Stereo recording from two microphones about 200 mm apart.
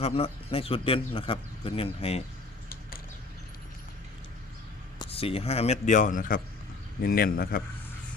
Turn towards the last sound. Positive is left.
turn(degrees=45)  # may be behind; listen again after turning